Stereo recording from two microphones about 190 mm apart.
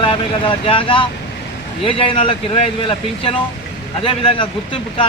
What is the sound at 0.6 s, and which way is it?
Speech, 30° left (ahead or behind).